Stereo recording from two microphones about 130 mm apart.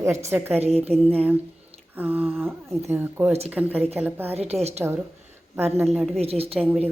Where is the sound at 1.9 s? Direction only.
15° right (ahead or behind).